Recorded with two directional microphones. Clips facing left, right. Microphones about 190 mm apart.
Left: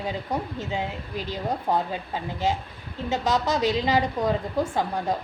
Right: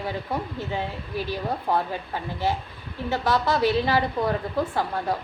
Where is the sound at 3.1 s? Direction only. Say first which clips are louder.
Right 1 dB; 20° left (ahead or behind).